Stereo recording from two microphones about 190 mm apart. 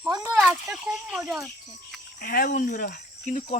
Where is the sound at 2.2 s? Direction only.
50° left (ahead or behind).